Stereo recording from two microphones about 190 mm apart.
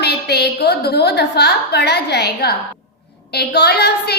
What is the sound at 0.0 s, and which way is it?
A woman's voice, 60° left (ahead or behind).